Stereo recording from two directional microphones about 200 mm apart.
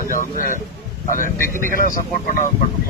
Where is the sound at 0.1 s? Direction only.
40° left (ahead or behind).